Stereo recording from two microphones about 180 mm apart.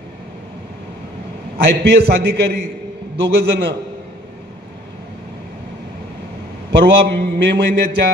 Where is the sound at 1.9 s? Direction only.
60° right (ahead or behind).